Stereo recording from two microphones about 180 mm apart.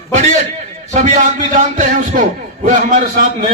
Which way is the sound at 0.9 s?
45° right (ahead or behind).